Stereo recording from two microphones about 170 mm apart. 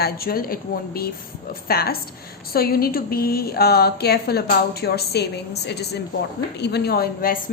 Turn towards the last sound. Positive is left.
turn(degrees=60)  # may be behind; listen again after turning